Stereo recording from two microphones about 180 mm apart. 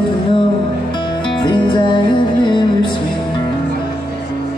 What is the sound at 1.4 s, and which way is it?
Music, 25° left (ahead or behind).